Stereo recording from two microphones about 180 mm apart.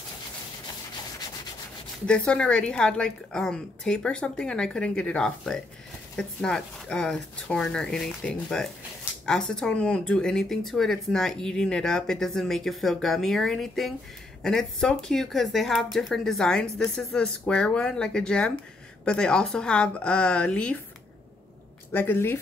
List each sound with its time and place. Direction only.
2.0 s speech: 5° left (ahead or behind)
21.9 s speech: 10° left (ahead or behind)